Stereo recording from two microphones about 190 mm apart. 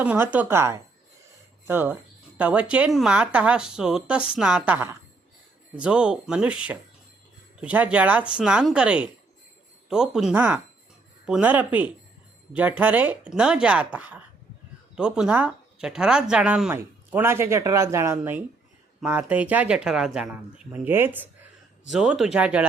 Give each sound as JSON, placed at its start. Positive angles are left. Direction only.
{"t": 0.0, "sound": "speech", "side_deg": -10}